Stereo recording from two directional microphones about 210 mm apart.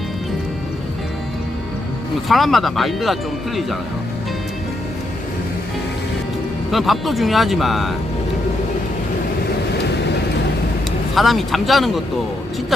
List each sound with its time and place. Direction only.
2.3 s speech: centre (ahead or behind)
6.7 s speech: centre (ahead or behind)
11.1 s speech: centre (ahead or behind)